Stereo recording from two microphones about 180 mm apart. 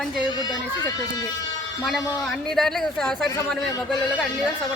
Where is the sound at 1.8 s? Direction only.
Centre (ahead or behind).